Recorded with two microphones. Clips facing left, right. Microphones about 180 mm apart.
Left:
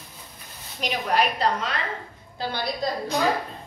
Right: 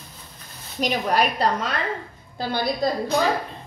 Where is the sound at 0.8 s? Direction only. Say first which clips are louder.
Right 6 dB; 40° right (ahead or behind).